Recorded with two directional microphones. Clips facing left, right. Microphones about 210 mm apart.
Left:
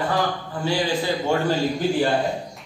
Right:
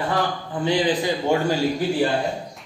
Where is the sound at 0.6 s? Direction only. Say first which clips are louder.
Right 2 dB; 20° right (ahead or behind).